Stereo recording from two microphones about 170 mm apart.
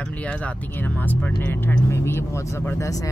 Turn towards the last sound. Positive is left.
turn(degrees=20)  # may be behind; listen again after turning